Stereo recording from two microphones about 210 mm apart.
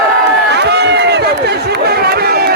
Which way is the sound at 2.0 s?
50° right (ahead or behind).